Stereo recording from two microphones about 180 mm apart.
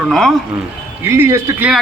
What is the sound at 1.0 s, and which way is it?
Speech, 15° right (ahead or behind).